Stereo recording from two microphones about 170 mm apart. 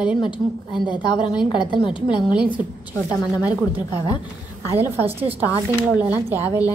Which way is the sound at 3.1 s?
15° left (ahead or behind).